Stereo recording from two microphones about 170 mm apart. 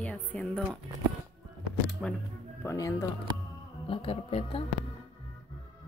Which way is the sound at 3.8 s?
35° left (ahead or behind).